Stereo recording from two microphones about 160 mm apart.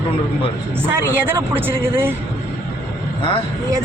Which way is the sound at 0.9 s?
15° right (ahead or behind).